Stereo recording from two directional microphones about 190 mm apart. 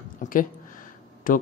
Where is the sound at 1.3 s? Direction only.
45° left (ahead or behind).